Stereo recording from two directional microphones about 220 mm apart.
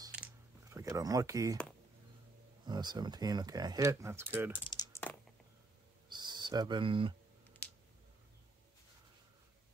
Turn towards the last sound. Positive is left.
turn(degrees=5)  # may be behind; listen again after turning